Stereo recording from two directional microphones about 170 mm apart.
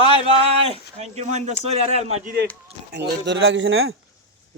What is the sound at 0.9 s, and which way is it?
Speech, 40° right (ahead or behind).